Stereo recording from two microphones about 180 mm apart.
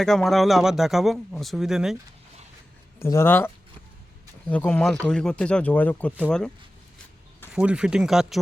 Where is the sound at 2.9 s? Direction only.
15° left (ahead or behind).